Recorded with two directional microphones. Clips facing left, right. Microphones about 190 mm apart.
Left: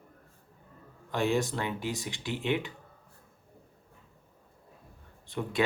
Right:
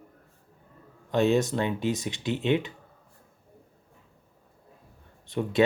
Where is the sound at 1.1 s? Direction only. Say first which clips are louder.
Right 6 dB; 20° right (ahead or behind).